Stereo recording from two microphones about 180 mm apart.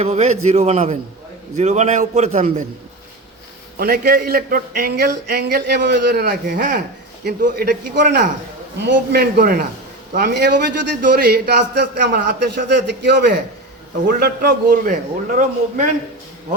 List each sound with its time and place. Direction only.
0.0 s a man's voice: 40° right (ahead or behind)
3.8 s speech: 60° right (ahead or behind)
6.5 s a man's voice: 45° right (ahead or behind)
7.3 s a man's voice: 60° right (ahead or behind)
14.7 s a man's voice: 45° right (ahead or behind)